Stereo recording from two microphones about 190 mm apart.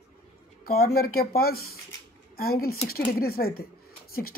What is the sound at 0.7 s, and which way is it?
A child's voice, 50° left (ahead or behind).